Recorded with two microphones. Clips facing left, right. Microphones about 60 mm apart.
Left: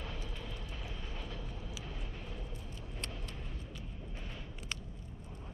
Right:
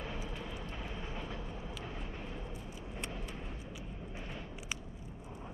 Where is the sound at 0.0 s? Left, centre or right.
Centre.